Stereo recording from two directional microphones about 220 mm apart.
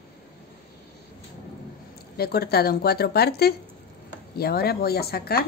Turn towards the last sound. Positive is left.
turn(degrees=45)  # may be behind; listen again after turning